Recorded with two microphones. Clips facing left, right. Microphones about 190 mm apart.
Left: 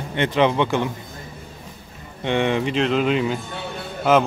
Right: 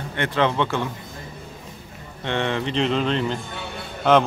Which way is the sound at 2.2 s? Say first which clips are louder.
Left 4 dB; 15° left (ahead or behind).